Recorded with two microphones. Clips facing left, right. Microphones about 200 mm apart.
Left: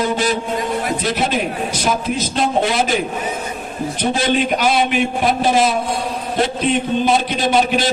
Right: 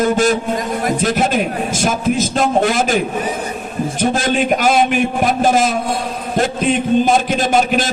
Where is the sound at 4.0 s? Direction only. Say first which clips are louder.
Right 1 dB; 45° right (ahead or behind).